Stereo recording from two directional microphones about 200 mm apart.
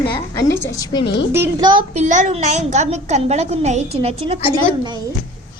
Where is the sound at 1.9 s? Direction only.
35° right (ahead or behind).